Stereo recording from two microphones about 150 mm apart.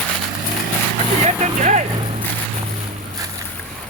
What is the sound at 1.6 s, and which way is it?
Vehicle, 55° right (ahead or behind).